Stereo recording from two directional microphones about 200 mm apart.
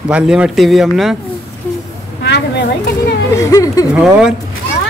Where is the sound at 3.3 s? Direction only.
15° left (ahead or behind).